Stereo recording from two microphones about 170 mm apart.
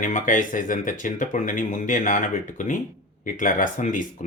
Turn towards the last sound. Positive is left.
turn(degrees=50)  # may be behind; listen again after turning